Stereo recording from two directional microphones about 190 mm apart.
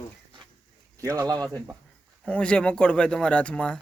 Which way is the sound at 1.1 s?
15° right (ahead or behind).